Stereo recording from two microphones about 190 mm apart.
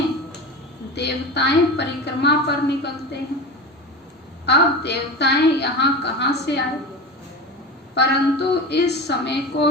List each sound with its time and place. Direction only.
0.9 s a woman's voice: 60° left (ahead or behind)
4.4 s a woman's voice: 60° left (ahead or behind)
7.9 s a woman's voice: 60° left (ahead or behind)